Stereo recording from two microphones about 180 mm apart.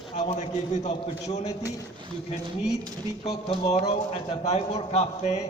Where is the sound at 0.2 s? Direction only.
40° left (ahead or behind).